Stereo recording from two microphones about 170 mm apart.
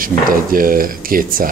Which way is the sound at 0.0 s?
55° right (ahead or behind).